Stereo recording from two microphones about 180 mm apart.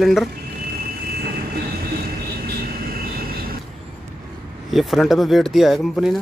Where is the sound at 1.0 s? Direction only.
60° right (ahead or behind).